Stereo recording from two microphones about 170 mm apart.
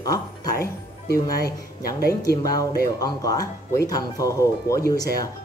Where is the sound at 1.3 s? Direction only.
60° left (ahead or behind).